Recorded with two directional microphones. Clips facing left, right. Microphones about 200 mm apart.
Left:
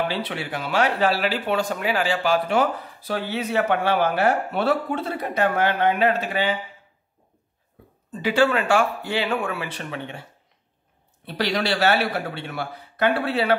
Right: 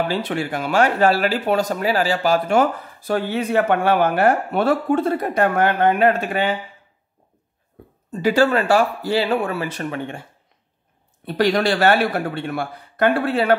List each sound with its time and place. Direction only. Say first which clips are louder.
0.1 s speech: right 5 dB; 45° right (ahead or behind)
8.1 s speech: right 3 dB; 45° right (ahead or behind)
11.2 s speech: right 6 dB; 50° right (ahead or behind)